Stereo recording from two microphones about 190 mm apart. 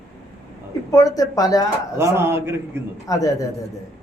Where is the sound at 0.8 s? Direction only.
20° left (ahead or behind).